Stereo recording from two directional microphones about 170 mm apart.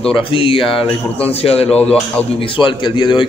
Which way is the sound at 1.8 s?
5° left (ahead or behind).